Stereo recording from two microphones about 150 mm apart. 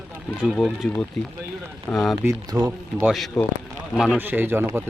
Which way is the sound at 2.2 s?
20° right (ahead or behind).